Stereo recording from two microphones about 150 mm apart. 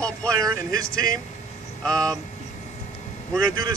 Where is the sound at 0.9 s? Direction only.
70° left (ahead or behind).